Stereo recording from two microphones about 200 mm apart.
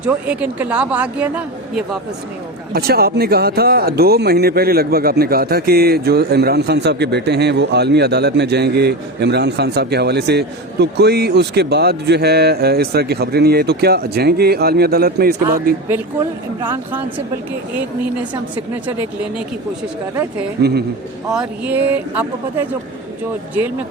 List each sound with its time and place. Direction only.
0.0 s speech: 5° right (ahead or behind)
2.7 s speech: 50° right (ahead or behind)
20.6 s speech: 55° right (ahead or behind)
21.2 s speech: 5° right (ahead or behind)